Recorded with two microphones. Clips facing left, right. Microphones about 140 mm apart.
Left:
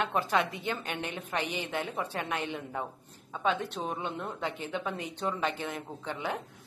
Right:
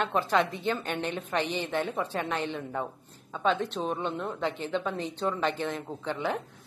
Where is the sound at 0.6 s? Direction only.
10° left (ahead or behind).